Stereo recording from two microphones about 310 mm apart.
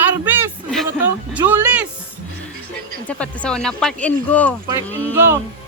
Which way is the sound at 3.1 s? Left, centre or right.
Centre.